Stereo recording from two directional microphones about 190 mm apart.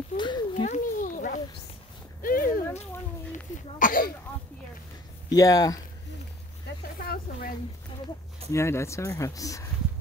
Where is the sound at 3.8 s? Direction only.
45° left (ahead or behind).